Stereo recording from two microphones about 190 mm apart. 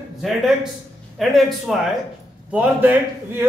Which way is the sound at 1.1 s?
Centre (ahead or behind).